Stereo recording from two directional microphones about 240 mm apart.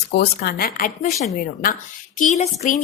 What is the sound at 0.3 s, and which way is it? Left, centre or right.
A woman's voice, left.